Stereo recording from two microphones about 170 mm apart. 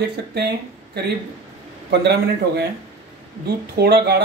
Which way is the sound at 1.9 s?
80° right.